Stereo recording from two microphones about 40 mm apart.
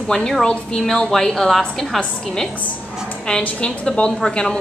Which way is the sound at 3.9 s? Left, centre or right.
Centre.